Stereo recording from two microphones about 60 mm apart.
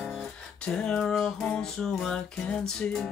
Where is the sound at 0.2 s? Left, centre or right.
Centre.